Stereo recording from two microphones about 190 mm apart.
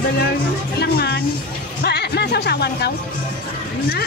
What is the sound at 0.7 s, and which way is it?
Music, 60° left (ahead or behind).